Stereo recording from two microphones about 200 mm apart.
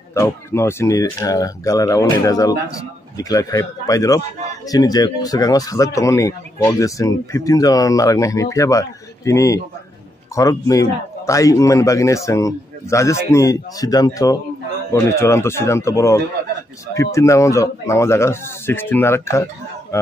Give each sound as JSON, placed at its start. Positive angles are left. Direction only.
{"t": 0.1, "sound": "speech", "side_deg": 15}